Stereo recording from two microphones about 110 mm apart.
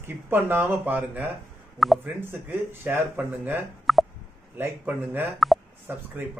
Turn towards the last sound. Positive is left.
turn(degrees=-15)  # may be behind; listen again after turning